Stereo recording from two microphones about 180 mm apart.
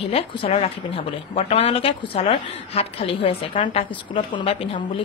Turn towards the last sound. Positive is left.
turn(degrees=30)  # may be behind; listen again after turning